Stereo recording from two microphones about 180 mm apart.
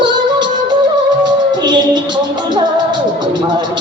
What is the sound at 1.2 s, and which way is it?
Music, 25° right (ahead or behind).